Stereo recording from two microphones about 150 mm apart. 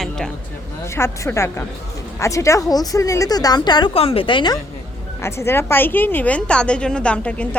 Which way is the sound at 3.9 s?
40° left (ahead or behind).